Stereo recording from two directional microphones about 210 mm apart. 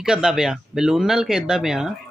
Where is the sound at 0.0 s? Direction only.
5° right (ahead or behind).